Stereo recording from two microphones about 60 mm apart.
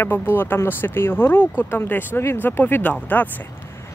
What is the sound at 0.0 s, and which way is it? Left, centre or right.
Speech, left.